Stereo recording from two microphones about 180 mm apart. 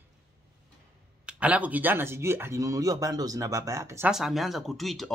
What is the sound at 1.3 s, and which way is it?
Speech, 5° right (ahead or behind).